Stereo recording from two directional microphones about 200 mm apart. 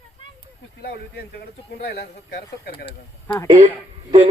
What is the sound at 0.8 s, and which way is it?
Speech, 50° left (ahead or behind).